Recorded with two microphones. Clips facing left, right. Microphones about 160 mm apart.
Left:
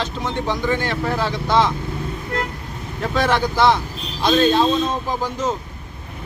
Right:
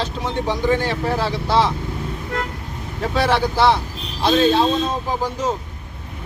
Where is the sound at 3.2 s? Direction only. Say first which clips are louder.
Right 1 dB; 35° right (ahead or behind).